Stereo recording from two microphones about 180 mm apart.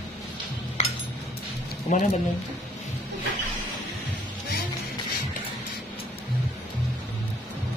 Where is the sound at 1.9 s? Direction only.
45° left (ahead or behind).